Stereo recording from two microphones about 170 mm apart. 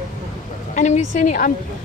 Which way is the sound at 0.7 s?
45° left (ahead or behind).